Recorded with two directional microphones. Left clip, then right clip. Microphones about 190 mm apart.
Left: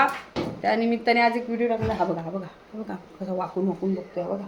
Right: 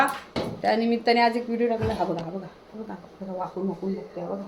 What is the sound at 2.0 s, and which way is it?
Speech, 15° left (ahead or behind).